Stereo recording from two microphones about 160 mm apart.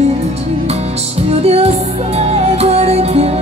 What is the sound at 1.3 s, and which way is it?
Music, 40° right (ahead or behind).